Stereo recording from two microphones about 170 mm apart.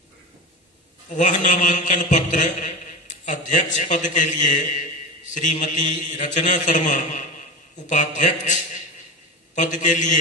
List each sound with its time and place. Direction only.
1.1 s a man's voice: 45° left (ahead or behind)
9.6 s a man's voice: 45° left (ahead or behind)